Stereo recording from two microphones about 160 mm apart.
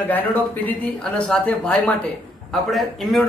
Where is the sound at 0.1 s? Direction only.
10° left (ahead or behind).